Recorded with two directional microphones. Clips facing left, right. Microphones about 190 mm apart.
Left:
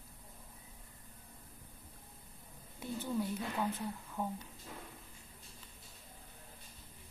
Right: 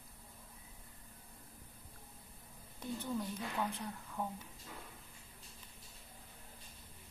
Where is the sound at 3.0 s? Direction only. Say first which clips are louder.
Left 4 dB; 5° left (ahead or behind).